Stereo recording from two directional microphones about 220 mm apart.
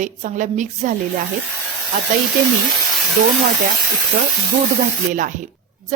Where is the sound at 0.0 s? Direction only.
35° right (ahead or behind).